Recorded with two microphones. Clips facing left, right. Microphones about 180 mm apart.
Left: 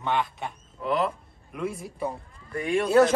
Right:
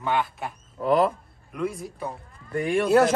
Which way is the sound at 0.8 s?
40° right (ahead or behind).